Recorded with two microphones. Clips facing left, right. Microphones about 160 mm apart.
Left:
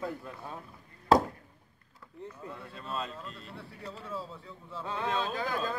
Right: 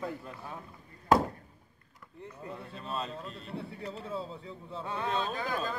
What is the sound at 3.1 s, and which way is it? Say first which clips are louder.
Speech: right 3 dB; 40° right (ahead or behind).